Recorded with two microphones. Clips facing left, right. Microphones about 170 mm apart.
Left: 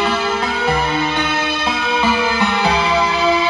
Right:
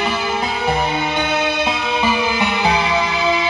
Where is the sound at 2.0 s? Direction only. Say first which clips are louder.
Left 1 dB; 15° right (ahead or behind).